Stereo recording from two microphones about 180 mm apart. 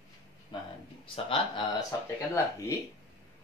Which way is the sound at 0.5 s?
25° left (ahead or behind).